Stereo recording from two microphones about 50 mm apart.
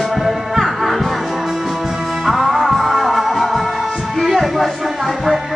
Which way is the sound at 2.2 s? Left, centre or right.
Centre.